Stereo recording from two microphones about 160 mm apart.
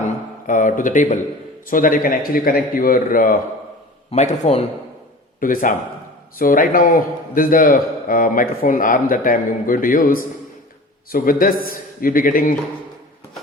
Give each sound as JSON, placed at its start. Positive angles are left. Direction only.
{"t": 0.4, "sound": "a man's voice", "side_deg": 55}
{"t": 4.1, "sound": "speech", "side_deg": 45}
{"t": 5.4, "sound": "a man's voice", "side_deg": 60}